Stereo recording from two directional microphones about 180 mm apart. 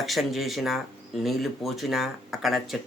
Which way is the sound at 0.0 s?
Centre (ahead or behind).